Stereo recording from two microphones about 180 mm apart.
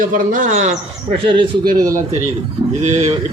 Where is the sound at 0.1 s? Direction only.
45° right (ahead or behind).